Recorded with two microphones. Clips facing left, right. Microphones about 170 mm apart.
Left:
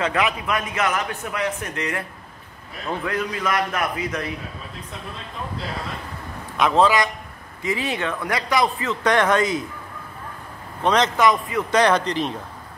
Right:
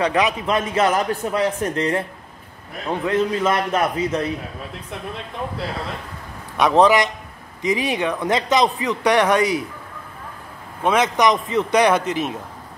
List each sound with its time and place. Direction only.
0.0 s a man's voice: 15° right (ahead or behind)
0.5 s a man's voice: 30° right (ahead or behind)
6.6 s a man's voice: 20° right (ahead or behind)
10.8 s a man's voice: 10° right (ahead or behind)
11.8 s a man's voice: 10° right (ahead or behind)